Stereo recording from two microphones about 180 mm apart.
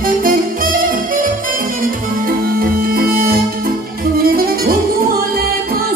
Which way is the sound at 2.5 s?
55° right (ahead or behind).